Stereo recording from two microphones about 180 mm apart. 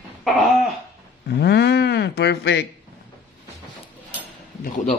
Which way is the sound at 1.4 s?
65° left (ahead or behind).